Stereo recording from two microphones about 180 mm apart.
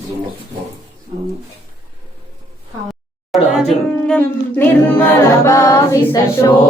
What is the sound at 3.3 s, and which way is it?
A capella, 5° left (ahead or behind).